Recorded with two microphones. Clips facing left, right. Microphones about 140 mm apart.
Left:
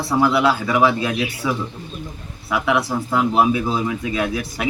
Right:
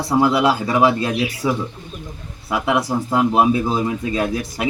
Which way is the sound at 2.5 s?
35° right (ahead or behind).